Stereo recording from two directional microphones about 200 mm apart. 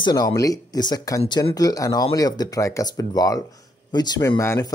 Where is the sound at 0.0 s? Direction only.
20° left (ahead or behind).